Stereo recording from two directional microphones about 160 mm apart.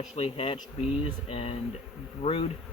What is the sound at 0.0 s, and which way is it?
Speech, 40° left (ahead or behind).